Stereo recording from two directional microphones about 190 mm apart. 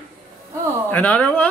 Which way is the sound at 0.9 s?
10° left (ahead or behind).